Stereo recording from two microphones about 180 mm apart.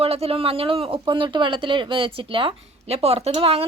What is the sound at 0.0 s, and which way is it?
A woman's voice, 35° right (ahead or behind).